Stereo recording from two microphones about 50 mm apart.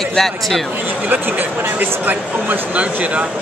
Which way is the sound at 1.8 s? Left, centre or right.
Right.